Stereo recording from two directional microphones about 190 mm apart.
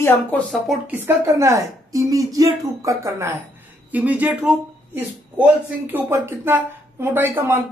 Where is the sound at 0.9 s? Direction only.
15° right (ahead or behind).